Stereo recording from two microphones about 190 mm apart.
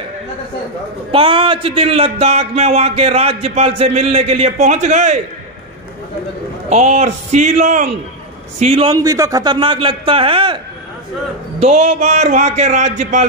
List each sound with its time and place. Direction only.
1.1 s a man's voice: 25° right (ahead or behind)
6.7 s a man's voice: 35° right (ahead or behind)
11.6 s a man's voice: 35° right (ahead or behind)